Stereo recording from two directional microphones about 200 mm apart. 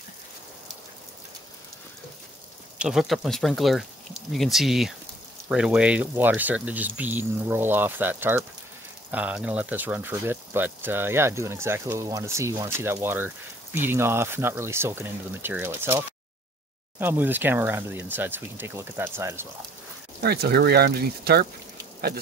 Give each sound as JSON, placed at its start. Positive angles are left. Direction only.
{"t": 2.8, "sound": "speech", "side_deg": 0}
{"t": 20.2, "sound": "speech", "side_deg": -55}